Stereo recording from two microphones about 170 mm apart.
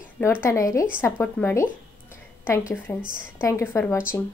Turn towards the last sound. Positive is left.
turn(degrees=15)  # may be behind; listen again after turning